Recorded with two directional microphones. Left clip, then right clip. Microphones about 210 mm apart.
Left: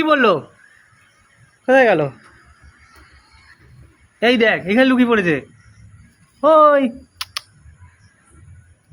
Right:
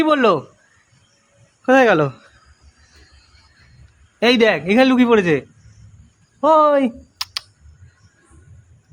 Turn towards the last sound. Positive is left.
turn(degrees=-15)  # may be behind; listen again after turning